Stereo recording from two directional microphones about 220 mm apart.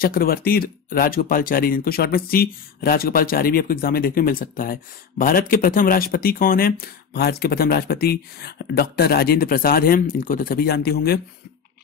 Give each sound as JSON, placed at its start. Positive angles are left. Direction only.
{"t": 0.0, "sound": "speech", "side_deg": 40}